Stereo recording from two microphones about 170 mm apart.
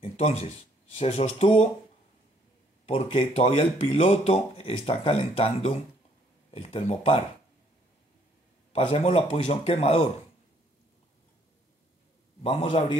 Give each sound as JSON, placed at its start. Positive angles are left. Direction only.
{"t": 0.0, "sound": "a sound", "side_deg": 40}
{"t": 0.9, "sound": "speech", "side_deg": 40}
{"t": 2.9, "sound": "speech", "side_deg": 35}
{"t": 8.7, "sound": "speech", "side_deg": 35}
{"t": 12.4, "sound": "speech", "side_deg": 35}